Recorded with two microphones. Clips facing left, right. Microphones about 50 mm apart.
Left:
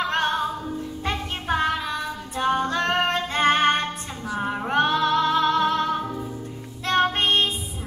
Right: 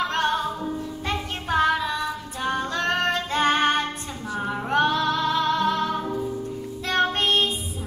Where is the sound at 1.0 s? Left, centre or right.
Centre.